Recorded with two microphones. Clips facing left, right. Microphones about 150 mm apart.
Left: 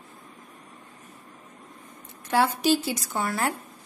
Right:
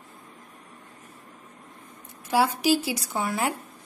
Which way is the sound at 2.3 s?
10° right (ahead or behind).